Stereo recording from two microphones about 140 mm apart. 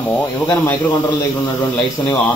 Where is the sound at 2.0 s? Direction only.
15° left (ahead or behind).